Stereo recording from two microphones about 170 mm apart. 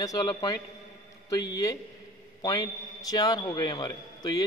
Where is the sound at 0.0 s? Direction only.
25° left (ahead or behind).